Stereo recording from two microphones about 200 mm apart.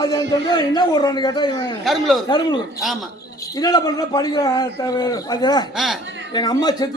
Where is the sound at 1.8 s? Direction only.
Centre (ahead or behind).